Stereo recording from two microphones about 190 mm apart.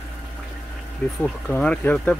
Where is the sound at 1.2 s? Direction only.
5° left (ahead or behind).